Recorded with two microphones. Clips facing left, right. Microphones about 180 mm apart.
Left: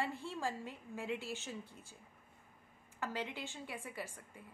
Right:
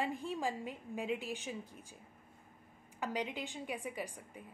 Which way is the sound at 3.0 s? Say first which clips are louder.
Right 3 dB; 15° right (ahead or behind).